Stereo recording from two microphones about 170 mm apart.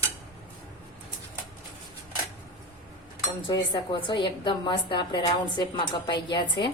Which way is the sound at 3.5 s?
30° left (ahead or behind).